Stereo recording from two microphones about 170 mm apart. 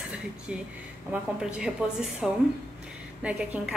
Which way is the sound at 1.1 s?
5° right (ahead or behind).